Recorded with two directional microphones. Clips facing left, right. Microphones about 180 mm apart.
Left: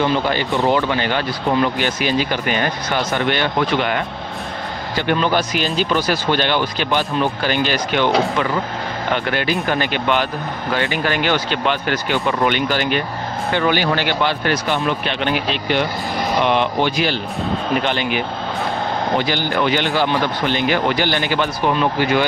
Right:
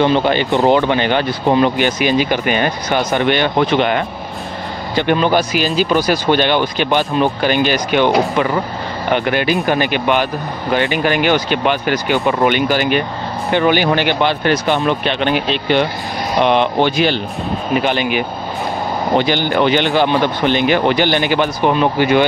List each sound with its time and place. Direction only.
0.0 s speech: 20° right (ahead or behind)
5.5 s speech: 5° right (ahead or behind)
9.1 s speech: 15° right (ahead or behind)
17.7 s speech: 10° right (ahead or behind)
19.2 s speech: 20° right (ahead or behind)